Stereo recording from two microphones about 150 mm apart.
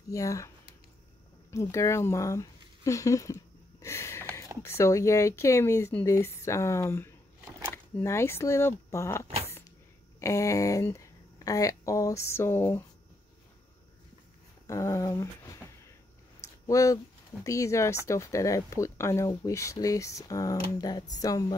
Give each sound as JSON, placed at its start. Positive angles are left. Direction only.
{"t": 0.1, "sound": "speech", "side_deg": 20}
{"t": 1.5, "sound": "speech", "side_deg": 20}
{"t": 3.8, "sound": "a sound", "side_deg": 20}
{"t": 4.6, "sound": "speech", "side_deg": 20}
{"t": 14.7, "sound": "speech", "side_deg": 20}